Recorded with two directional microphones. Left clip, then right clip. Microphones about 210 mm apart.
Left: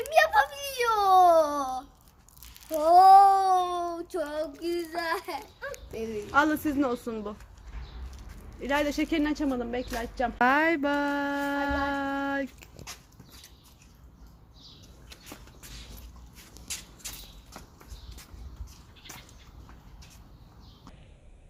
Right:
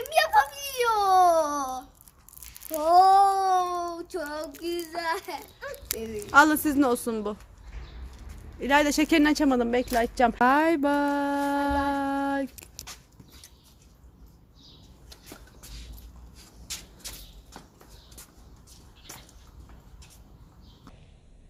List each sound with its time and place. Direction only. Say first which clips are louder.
0.0 s whimper: even; 5° left (ahead or behind)
2.7 s child singing: left 2 dB; 10° left (ahead or behind)
4.6 s a sound: right 4 dB; 5° left (ahead or behind)
6.3 s a woman's voice: right 6 dB; 25° right (ahead or behind)
8.6 s speech: right 5 dB; 30° right (ahead or behind); by 10.3 s 45° right (ahead or behind)
10.3 s a sound: left 2 dB; 25° right (ahead or behind)